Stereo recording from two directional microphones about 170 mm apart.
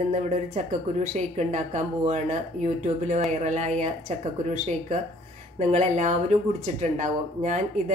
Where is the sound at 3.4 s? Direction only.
45° right (ahead or behind).